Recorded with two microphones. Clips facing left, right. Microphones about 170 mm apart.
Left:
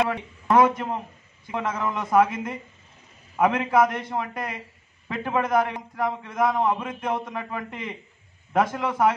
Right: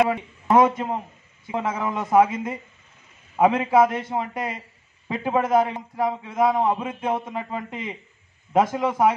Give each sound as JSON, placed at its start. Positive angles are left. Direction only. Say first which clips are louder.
{"t": 0.5, "sound": "a man's voice", "louder": "right 1 dB", "side_deg": -25}